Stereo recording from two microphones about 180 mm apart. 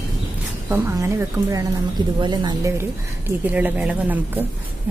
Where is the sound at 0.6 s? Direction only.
10° right (ahead or behind).